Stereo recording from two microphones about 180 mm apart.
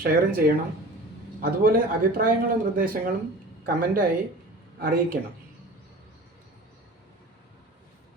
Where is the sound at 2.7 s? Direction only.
50° right (ahead or behind).